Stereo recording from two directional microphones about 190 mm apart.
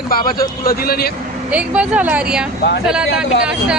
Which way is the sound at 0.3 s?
50° left (ahead or behind).